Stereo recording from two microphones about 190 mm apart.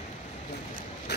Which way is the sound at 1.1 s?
60° left (ahead or behind).